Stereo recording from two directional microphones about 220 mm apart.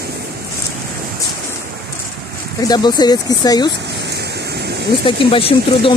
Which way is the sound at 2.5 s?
15° left (ahead or behind).